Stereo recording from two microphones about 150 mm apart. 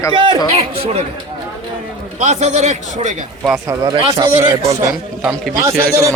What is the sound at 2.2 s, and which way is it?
Speech, 50° right (ahead or behind).